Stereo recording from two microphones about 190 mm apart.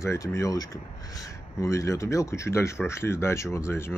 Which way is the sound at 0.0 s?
15° left (ahead or behind).